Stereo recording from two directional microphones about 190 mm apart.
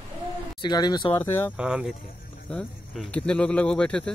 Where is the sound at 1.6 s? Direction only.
5° right (ahead or behind).